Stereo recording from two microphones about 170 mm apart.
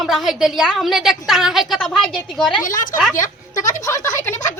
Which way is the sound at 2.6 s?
50° left (ahead or behind).